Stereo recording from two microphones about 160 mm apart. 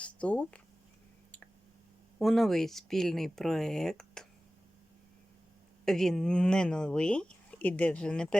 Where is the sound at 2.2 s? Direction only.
Centre (ahead or behind).